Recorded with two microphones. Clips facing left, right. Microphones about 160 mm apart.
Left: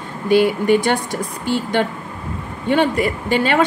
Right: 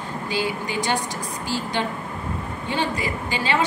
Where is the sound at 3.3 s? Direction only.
60° left (ahead or behind).